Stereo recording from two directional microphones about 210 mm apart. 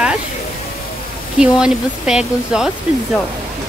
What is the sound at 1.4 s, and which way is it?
Speech, 5° right (ahead or behind).